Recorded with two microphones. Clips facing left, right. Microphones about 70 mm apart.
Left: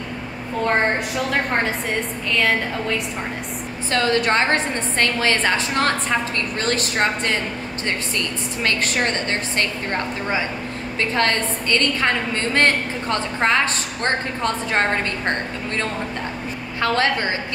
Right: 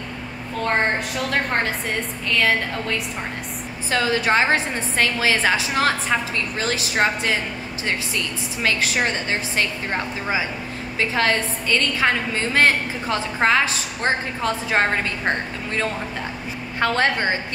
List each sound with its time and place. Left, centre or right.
0.7 s a woman's voice: centre
16.8 s a woman's voice: right